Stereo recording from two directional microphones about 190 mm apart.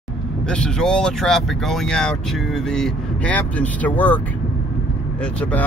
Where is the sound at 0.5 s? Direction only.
5° left (ahead or behind).